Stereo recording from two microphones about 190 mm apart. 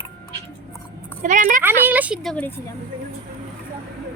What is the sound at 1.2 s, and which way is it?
Speech, 40° right (ahead or behind).